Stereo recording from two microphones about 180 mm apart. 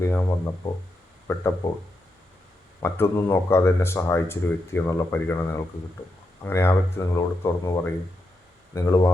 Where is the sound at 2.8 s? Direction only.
15° left (ahead or behind).